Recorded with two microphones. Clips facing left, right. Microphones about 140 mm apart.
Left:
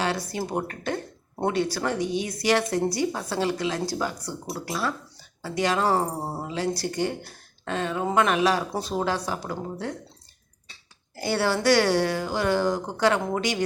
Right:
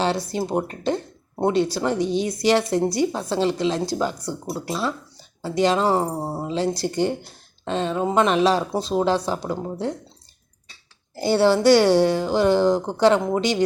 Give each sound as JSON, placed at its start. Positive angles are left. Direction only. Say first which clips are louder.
{"t": 0.0, "sound": "a woman's voice", "louder": "right 4 dB", "side_deg": -25}
{"t": 11.1, "sound": "a woman's voice", "louder": "right 7 dB", "side_deg": -25}